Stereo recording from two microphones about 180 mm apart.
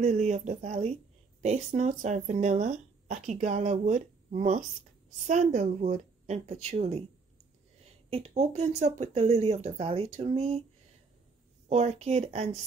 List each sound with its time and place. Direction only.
0.0 s speech: 40° right (ahead or behind)
8.1 s speech: 35° right (ahead or behind)
11.7 s speech: 35° right (ahead or behind)